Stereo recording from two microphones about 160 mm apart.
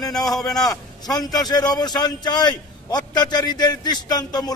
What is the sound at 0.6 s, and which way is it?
A man's voice, 25° left (ahead or behind).